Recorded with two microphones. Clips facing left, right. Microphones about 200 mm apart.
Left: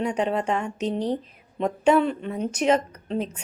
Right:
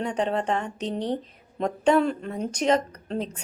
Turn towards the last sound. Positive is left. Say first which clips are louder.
# left 2 dB
turn(degrees=-35)  # may be behind; listen again after turning